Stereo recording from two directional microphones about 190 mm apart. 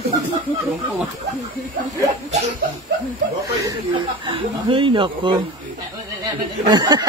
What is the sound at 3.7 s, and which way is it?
Speech, 25° right (ahead or behind).